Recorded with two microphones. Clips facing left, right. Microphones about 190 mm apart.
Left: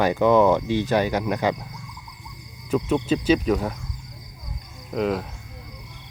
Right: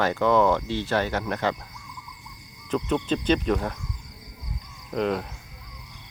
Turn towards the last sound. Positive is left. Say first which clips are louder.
# left 2 dB
turn(degrees=0)  # may be behind; listen again after turning